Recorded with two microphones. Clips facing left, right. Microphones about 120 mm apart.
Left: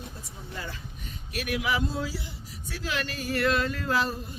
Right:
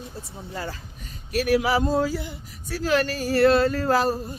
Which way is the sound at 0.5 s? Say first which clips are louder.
Right 5 dB; 40° right (ahead or behind).